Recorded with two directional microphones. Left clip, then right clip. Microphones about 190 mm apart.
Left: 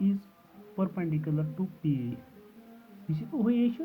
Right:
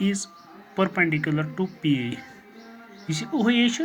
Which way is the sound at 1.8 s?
60° right (ahead or behind).